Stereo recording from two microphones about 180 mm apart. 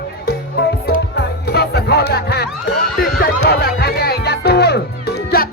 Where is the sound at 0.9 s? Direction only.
60° left (ahead or behind).